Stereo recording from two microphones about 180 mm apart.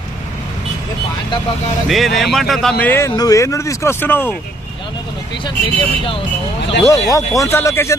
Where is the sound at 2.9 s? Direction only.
20° left (ahead or behind).